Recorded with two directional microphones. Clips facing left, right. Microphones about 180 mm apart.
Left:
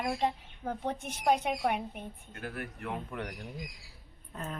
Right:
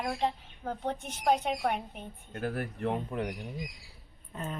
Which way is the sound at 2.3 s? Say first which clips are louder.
Right 8 dB; 40° right (ahead or behind).